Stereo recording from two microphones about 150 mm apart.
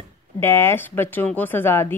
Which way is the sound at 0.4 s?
15° left (ahead or behind).